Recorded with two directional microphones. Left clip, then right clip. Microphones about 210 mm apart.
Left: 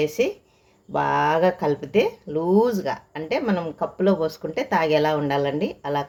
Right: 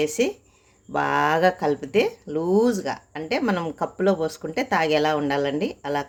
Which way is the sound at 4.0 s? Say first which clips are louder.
Left 1 dB; 10° right (ahead or behind).